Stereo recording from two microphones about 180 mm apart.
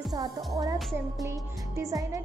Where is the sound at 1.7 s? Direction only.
20° right (ahead or behind).